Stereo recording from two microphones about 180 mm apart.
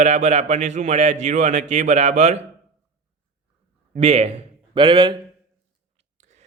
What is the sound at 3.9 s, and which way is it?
A man's voice, 35° right (ahead or behind).